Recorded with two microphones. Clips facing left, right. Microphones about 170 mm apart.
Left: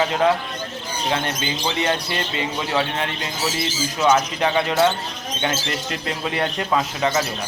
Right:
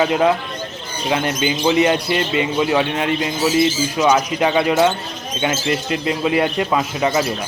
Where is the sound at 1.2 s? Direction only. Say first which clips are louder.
Right 7 dB; 15° right (ahead or behind).